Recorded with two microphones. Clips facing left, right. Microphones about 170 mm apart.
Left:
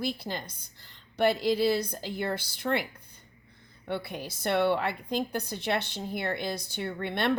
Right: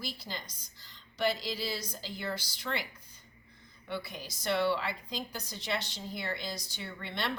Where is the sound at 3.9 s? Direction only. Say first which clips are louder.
Left 5 dB; 55° left (ahead or behind).